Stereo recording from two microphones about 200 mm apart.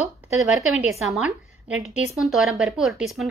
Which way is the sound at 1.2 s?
5° right (ahead or behind).